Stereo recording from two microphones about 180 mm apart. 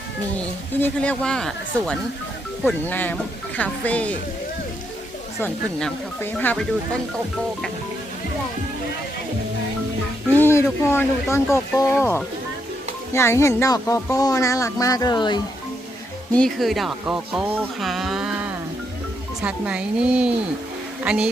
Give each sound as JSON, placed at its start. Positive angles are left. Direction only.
{"t": 0.7, "sound": "speech", "side_deg": 10}
{"t": 5.4, "sound": "speech", "side_deg": 10}
{"t": 10.3, "sound": "speech", "side_deg": 15}
{"t": 16.3, "sound": "speech", "side_deg": 5}